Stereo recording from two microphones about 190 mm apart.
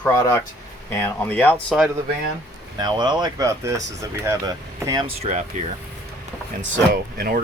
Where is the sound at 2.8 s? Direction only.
20° right (ahead or behind).